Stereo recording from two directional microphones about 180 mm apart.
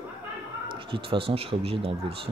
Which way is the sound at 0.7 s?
30° right (ahead or behind).